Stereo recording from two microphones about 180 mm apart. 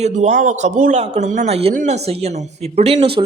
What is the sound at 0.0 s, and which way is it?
Speech, 40° right (ahead or behind).